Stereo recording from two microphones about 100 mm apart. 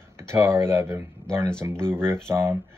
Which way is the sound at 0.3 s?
25° right (ahead or behind).